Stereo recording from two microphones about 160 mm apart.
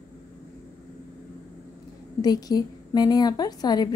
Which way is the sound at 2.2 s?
25° left (ahead or behind).